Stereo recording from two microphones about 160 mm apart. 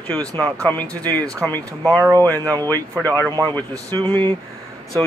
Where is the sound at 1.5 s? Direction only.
10° left (ahead or behind).